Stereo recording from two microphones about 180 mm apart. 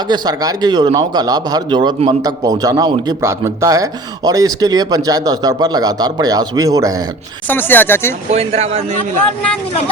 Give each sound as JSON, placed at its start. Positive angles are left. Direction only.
{"t": 0.1, "sound": "a man's voice", "side_deg": -20}
{"t": 7.4, "sound": "speech", "side_deg": 10}
{"t": 8.3, "sound": "speech", "side_deg": -35}